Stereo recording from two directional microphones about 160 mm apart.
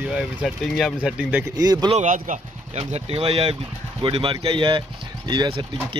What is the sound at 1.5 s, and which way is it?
Speech, 25° right (ahead or behind).